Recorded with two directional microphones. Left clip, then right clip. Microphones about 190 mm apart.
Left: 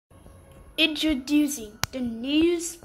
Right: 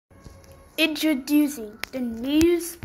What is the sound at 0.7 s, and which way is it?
A woman's voice, 10° right (ahead or behind).